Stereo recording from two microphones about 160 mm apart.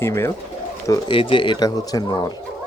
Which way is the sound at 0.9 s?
30° left (ahead or behind).